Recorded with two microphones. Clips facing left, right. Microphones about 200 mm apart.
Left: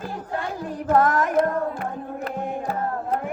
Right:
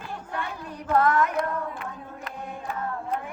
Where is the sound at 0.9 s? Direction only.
45° left (ahead or behind).